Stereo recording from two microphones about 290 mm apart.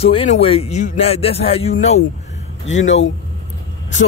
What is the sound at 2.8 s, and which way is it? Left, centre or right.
Speech, left.